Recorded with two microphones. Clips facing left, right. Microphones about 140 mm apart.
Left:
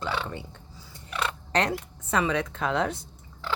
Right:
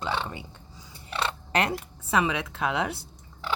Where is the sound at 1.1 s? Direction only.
30° right (ahead or behind).